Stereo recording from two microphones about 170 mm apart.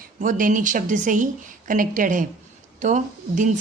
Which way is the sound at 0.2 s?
50° right (ahead or behind).